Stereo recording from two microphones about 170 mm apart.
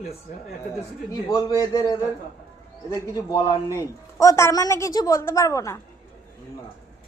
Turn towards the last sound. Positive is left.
turn(degrees=20)  # may be behind; listen again after turning